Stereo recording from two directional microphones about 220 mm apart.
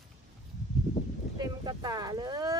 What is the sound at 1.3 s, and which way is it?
Vehicle, 20° right (ahead or behind).